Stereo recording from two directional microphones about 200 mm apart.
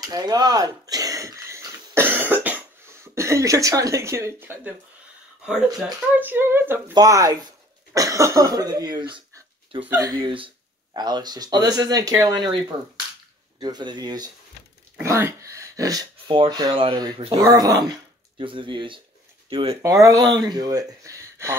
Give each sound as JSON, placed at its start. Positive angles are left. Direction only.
{"t": 0.1, "sound": "a sound", "side_deg": -20}
{"t": 6.1, "sound": "speech", "side_deg": -10}
{"t": 19.8, "sound": "speech", "side_deg": -15}